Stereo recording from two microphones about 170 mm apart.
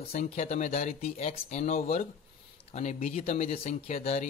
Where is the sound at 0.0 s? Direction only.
40° left (ahead or behind).